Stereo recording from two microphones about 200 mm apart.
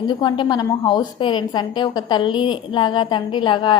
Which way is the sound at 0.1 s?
25° left (ahead or behind).